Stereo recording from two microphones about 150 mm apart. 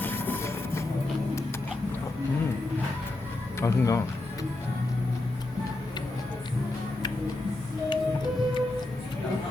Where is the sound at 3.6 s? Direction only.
20° left (ahead or behind).